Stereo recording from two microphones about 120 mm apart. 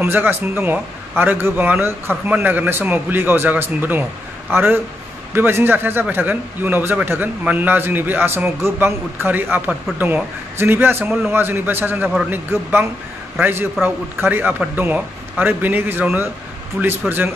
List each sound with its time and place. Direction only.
0.0 s a man's voice: 20° right (ahead or behind)
5.3 s a man's voice: 20° right (ahead or behind)